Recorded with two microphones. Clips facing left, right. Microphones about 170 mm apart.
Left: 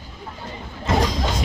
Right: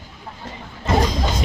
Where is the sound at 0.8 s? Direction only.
Centre (ahead or behind).